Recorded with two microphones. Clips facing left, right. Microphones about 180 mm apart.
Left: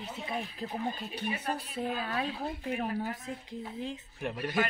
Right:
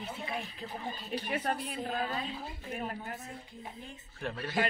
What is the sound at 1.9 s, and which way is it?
Speech, 70° left (ahead or behind).